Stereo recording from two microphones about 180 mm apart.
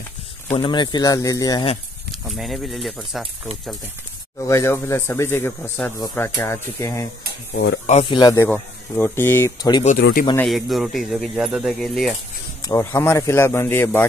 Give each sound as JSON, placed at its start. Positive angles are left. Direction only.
{"t": 0.6, "sound": "speech", "side_deg": 25}
{"t": 2.2, "sound": "speech", "side_deg": 0}
{"t": 4.4, "sound": "speech", "side_deg": 15}
{"t": 7.5, "sound": "speech", "side_deg": 70}
{"t": 8.0, "sound": "speech", "side_deg": 25}
{"t": 8.5, "sound": "speech", "side_deg": 10}
{"t": 9.9, "sound": "speech", "side_deg": 60}
{"t": 10.5, "sound": "speech", "side_deg": 0}
{"t": 12.6, "sound": "speech", "side_deg": 15}